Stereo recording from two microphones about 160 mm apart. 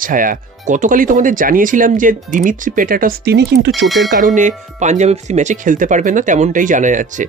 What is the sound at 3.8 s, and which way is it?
Speech, centre (ahead or behind).